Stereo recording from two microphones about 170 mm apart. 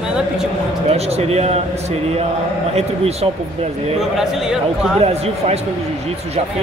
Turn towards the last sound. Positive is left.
turn(degrees=-35)  # may be behind; listen again after turning